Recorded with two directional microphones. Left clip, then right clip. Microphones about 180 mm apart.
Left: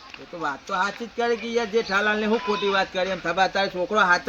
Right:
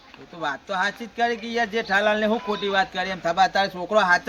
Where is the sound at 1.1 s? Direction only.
20° right (ahead or behind).